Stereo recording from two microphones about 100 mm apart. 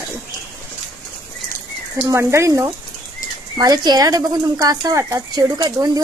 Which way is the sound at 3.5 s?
45° right (ahead or behind).